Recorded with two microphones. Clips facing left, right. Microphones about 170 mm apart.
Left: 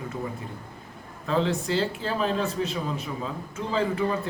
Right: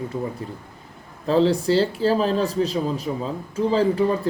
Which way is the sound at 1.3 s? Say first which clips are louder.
Right 7 dB; 35° right (ahead or behind).